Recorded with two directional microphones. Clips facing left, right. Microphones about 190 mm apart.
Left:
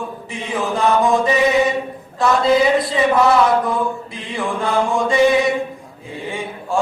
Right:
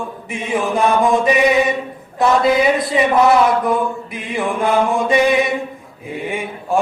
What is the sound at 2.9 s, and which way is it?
Chant, 20° right (ahead or behind).